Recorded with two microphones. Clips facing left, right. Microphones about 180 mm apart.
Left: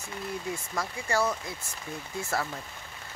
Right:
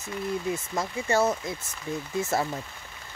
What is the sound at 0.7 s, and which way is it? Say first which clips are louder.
Speech: right 4 dB; 25° right (ahead or behind).